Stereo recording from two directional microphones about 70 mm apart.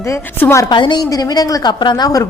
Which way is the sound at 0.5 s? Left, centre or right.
Left.